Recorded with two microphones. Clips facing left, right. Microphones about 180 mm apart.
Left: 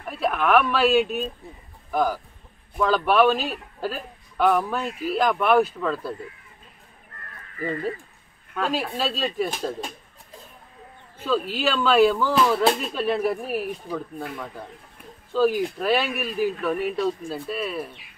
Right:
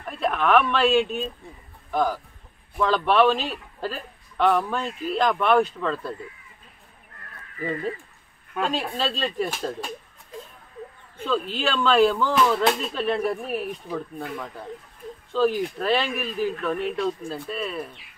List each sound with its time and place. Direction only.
0.0 s a man's voice: 5° left (ahead or behind)
8.6 s a man's voice: 5° left (ahead or behind)
11.2 s a man's voice: 5° left (ahead or behind)